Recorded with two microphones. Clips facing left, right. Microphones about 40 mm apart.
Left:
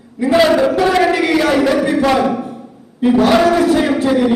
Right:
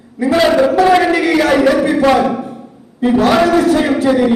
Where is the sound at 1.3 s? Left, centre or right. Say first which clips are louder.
Right 2 dB; centre.